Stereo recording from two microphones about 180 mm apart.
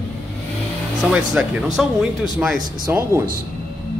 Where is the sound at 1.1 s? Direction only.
5° right (ahead or behind).